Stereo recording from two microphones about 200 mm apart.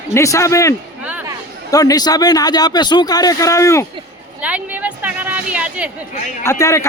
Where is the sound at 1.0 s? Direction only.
5° right (ahead or behind).